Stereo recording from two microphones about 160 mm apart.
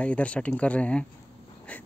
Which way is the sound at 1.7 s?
10° left (ahead or behind).